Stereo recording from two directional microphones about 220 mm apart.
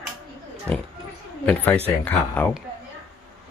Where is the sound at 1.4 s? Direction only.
5° left (ahead or behind).